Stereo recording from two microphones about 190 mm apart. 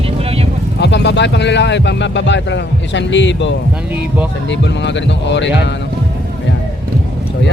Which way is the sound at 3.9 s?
5° right (ahead or behind).